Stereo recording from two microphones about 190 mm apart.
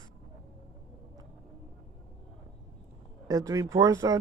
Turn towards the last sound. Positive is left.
turn(degrees=-15)  # may be behind; listen again after turning